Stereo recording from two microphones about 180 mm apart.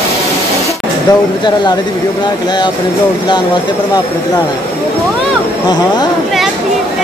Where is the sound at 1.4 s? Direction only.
25° left (ahead or behind).